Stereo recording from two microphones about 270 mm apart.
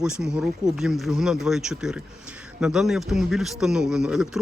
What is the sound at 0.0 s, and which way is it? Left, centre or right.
A man's voice, centre.